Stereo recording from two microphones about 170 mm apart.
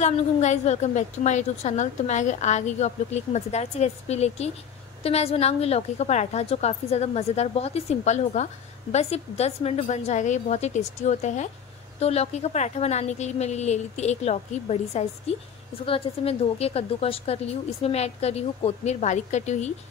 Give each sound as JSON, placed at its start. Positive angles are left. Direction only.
{"t": 0.0, "sound": "a woman's voice", "side_deg": 45}